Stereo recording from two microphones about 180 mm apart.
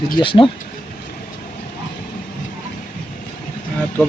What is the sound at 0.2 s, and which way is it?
Speech, 30° left (ahead or behind).